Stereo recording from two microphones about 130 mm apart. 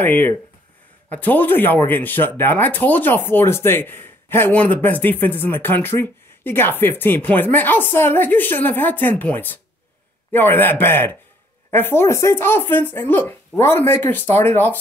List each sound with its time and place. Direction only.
0.0 s speech: 15° left (ahead or behind)